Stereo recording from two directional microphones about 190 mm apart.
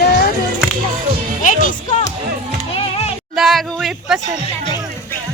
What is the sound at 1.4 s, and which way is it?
Speech, 45° left (ahead or behind).